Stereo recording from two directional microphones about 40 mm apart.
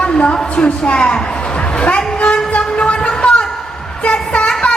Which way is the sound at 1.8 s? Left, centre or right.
Left.